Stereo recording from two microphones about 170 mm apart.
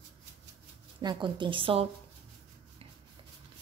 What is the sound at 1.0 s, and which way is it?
Speech, 25° right (ahead or behind).